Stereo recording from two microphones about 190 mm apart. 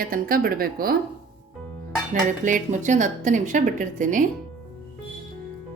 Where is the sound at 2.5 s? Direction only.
40° right (ahead or behind).